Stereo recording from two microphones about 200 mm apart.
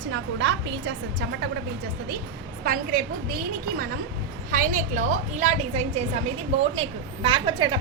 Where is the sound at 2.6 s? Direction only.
45° right (ahead or behind).